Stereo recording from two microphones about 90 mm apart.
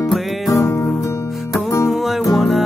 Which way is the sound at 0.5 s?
35° left (ahead or behind).